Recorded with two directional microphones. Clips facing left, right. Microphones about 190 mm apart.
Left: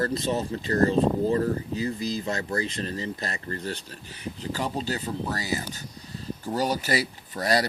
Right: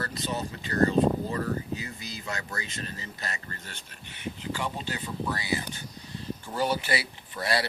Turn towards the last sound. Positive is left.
turn(degrees=40)  # may be behind; listen again after turning